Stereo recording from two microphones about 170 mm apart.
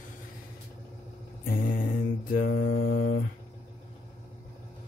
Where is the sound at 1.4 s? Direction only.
55° left (ahead or behind); by 3.1 s 75° left (ahead or behind).